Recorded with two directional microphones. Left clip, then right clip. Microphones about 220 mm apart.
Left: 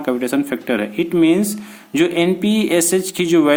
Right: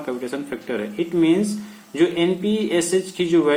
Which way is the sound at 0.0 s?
50° left (ahead or behind).